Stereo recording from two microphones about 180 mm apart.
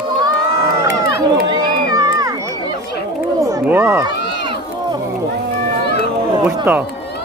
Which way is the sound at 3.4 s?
10° right (ahead or behind).